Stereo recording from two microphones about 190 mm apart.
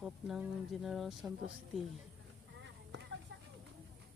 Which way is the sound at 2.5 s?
75° right (ahead or behind).